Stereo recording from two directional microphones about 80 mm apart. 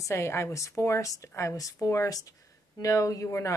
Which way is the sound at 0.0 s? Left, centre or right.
Left.